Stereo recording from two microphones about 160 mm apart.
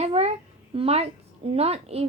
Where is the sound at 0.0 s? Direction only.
40° right (ahead or behind).